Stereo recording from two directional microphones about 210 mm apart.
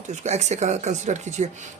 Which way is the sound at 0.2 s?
30° right (ahead or behind).